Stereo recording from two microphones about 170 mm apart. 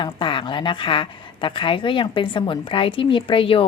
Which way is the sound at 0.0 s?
30° left (ahead or behind).